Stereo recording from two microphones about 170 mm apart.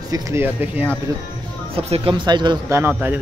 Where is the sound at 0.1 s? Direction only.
15° right (ahead or behind).